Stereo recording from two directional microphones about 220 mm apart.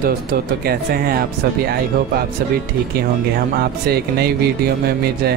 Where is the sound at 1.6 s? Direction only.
45° right (ahead or behind).